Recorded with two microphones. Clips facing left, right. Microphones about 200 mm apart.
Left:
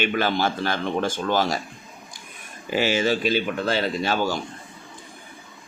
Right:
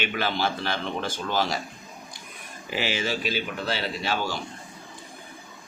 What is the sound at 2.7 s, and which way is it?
A man's voice, 45° left (ahead or behind).